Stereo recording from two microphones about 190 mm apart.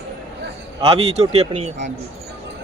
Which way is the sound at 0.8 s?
30° right (ahead or behind).